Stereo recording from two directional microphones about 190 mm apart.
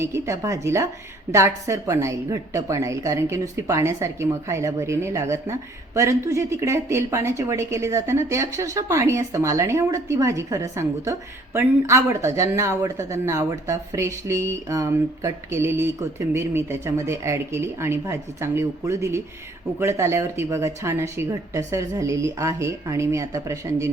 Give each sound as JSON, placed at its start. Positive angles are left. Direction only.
{"t": 0.0, "sound": "a woman's voice", "side_deg": -15}